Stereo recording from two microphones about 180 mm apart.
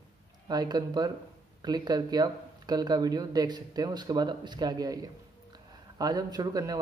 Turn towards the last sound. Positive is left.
turn(degrees=-20)  # may be behind; listen again after turning